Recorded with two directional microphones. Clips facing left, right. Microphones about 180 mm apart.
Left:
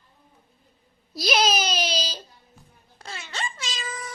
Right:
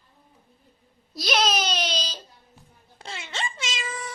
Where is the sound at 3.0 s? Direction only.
25° right (ahead or behind).